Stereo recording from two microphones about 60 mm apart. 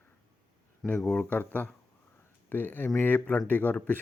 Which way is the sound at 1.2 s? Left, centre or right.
Left.